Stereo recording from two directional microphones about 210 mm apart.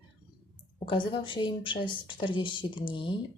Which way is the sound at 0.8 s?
25° left (ahead or behind).